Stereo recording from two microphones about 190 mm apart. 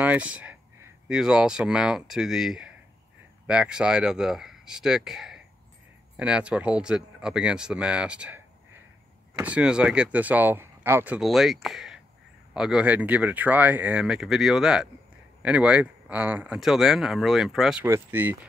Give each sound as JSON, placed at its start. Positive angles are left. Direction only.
{"t": 0.0, "sound": "speech", "side_deg": -5}
{"t": 9.4, "sound": "speech", "side_deg": -5}